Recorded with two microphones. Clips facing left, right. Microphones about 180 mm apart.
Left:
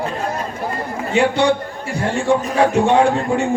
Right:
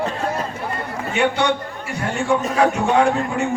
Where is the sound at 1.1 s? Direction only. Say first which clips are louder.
Left 4 dB; 30° left (ahead or behind).